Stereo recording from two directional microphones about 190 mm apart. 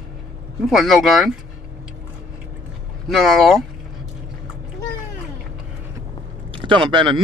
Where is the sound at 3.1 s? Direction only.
Centre (ahead or behind).